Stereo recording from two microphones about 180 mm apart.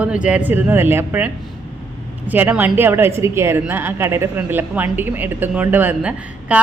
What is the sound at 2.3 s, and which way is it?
A woman's voice, 10° right (ahead or behind).